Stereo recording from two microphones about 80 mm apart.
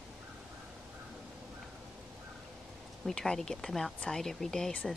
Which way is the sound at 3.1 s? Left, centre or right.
Centre.